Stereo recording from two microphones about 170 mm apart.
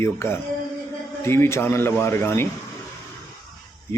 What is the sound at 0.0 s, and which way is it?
A man's voice, 15° left (ahead or behind).